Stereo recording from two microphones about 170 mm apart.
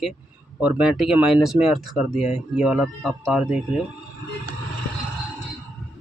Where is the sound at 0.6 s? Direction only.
5° right (ahead or behind).